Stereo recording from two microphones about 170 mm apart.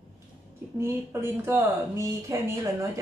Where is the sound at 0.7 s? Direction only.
15° right (ahead or behind).